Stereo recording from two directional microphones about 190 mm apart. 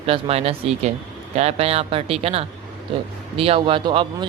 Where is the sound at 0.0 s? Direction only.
30° right (ahead or behind).